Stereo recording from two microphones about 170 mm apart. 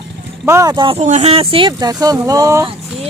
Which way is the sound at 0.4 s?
20° right (ahead or behind).